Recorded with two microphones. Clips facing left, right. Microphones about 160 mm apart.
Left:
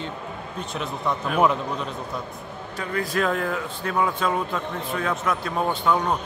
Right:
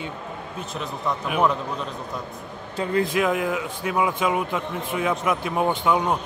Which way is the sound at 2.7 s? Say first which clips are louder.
Right 5 dB; 25° right (ahead or behind).